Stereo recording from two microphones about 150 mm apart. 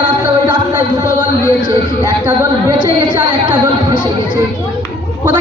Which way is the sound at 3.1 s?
30° right (ahead or behind).